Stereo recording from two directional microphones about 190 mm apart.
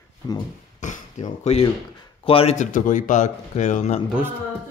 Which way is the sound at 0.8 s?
40° left (ahead or behind).